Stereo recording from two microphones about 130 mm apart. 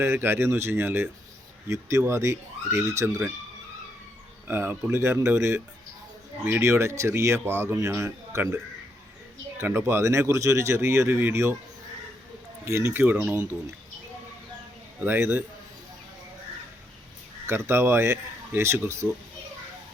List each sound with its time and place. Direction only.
0.0 s speech: 15° right (ahead or behind)
4.4 s speech: 15° right (ahead or behind)
12.6 s speech: 20° right (ahead or behind)
15.0 s speech: 15° right (ahead or behind)
17.4 s speech: 20° right (ahead or behind)